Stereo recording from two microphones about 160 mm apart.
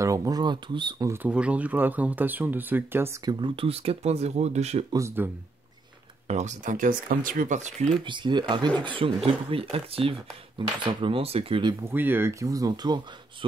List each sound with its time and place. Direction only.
0.0 s speech: 20° right (ahead or behind)
3.3 s speech: 30° right (ahead or behind)
4.9 s speech: 15° right (ahead or behind)
6.2 s speech: 45° right (ahead or behind)
8.0 s speech: 30° right (ahead or behind)
11.8 s speech: 10° right (ahead or behind)